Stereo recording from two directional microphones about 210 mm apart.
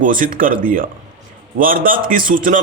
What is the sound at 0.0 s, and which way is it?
A man's voice, 40° right (ahead or behind).